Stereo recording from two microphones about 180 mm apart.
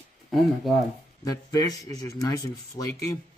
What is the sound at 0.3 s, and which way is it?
Speech, centre (ahead or behind).